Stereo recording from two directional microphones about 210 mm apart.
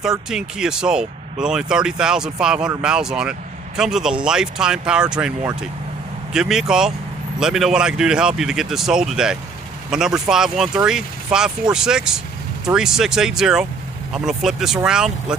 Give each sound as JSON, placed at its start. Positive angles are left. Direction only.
{"t": 0.0, "sound": "speech", "side_deg": -5}